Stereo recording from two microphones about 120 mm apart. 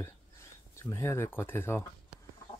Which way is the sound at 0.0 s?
25° left (ahead or behind).